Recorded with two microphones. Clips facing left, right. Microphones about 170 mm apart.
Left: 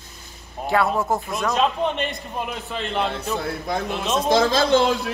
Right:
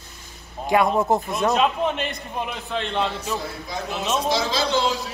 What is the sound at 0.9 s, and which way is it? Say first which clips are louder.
Speech: right 3 dB; 20° right (ahead or behind).